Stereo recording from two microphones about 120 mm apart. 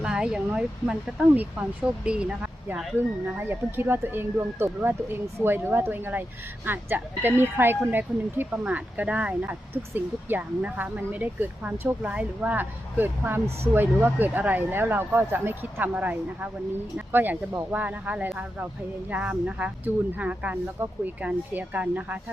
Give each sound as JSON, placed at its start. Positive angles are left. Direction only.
{"t": 0.0, "sound": "speech", "side_deg": -5}
{"t": 2.0, "sound": "speech", "side_deg": -10}
{"t": 3.3, "sound": "speech", "side_deg": -20}